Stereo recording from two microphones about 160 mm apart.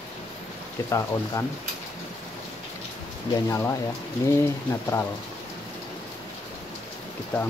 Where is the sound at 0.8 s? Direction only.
20° left (ahead or behind).